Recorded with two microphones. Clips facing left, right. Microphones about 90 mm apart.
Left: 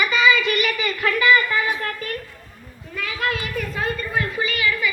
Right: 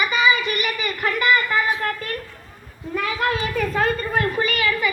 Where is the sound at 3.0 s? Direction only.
35° right (ahead or behind).